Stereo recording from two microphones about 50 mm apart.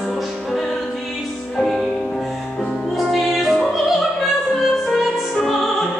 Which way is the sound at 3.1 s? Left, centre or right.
Centre.